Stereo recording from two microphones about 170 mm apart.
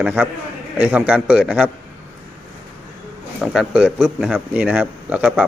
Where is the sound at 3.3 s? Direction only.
5° right (ahead or behind).